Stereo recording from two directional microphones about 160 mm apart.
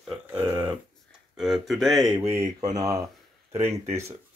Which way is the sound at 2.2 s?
15° right (ahead or behind).